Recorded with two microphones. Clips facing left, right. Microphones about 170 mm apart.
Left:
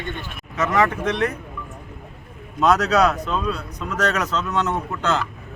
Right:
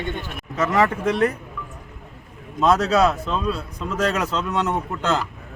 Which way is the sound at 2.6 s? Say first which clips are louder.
Even; 30° right (ahead or behind).